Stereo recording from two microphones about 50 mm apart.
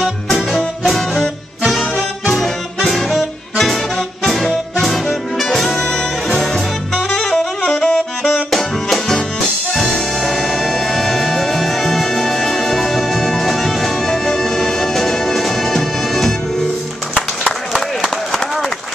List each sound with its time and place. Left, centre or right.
0.0 s music: centre
1.7 s brass instrument: centre
2.3 s music: centre
7.7 s saxophone: centre
8.5 s music: centre
17.7 s a sound: centre